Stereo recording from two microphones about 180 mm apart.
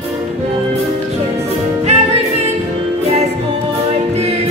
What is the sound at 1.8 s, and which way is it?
Music, 35° right (ahead or behind).